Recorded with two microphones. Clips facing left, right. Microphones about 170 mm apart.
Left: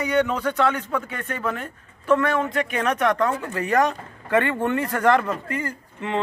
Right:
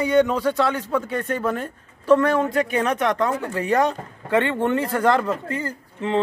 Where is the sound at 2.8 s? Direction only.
25° right (ahead or behind).